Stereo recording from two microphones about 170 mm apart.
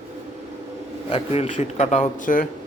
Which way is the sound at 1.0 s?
35° left (ahead or behind).